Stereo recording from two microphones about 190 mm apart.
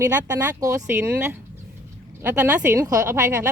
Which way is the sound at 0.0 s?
10° right (ahead or behind).